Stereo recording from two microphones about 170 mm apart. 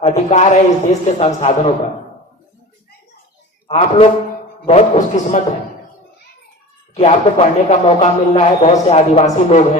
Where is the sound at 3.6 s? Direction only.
35° left (ahead or behind).